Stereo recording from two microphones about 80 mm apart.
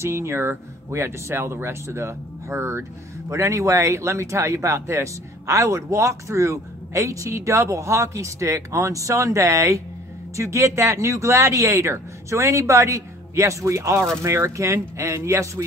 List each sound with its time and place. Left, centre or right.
0.0 s speech: right